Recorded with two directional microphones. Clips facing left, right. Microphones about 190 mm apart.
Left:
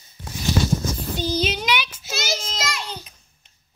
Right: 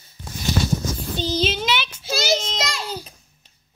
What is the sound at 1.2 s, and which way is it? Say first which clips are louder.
Child singing: right 1 dB; 10° left (ahead or behind).